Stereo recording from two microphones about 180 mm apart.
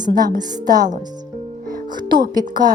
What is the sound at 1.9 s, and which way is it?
Speech, 25° right (ahead or behind).